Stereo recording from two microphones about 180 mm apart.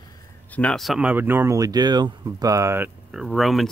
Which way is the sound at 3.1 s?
Centre (ahead or behind).